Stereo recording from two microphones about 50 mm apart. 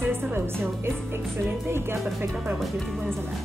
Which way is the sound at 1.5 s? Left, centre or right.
Right.